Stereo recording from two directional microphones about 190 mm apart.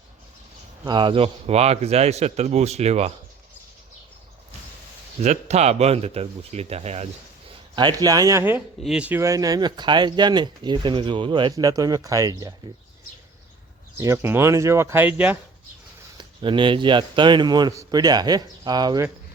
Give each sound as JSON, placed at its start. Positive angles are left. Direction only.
{"t": 0.9, "sound": "speech", "side_deg": -25}
{"t": 5.2, "sound": "speech", "side_deg": -35}
{"t": 7.8, "sound": "speech", "side_deg": -20}
{"t": 14.0, "sound": "speech", "side_deg": -15}
{"t": 16.1, "sound": "speech", "side_deg": -25}